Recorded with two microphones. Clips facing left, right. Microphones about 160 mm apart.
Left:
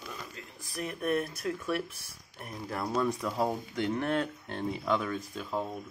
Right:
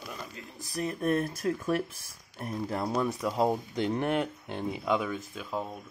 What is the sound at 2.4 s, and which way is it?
Speech, 25° right (ahead or behind).